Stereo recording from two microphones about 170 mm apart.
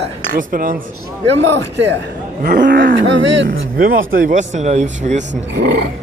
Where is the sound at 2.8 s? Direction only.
80° right.